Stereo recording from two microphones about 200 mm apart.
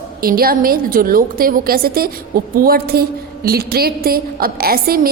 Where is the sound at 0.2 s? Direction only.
50° right (ahead or behind).